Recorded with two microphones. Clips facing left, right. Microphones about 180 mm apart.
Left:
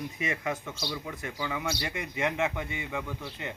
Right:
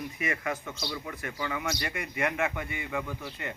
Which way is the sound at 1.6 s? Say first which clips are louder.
Even; 25° left (ahead or behind).